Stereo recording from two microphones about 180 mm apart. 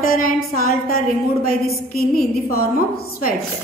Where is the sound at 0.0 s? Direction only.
50° left (ahead or behind).